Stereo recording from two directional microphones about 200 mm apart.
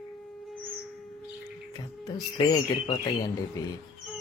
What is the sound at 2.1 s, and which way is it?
Speech, 20° left (ahead or behind).